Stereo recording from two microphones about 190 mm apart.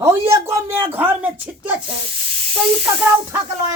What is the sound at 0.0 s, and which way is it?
Speech, 15° right (ahead or behind).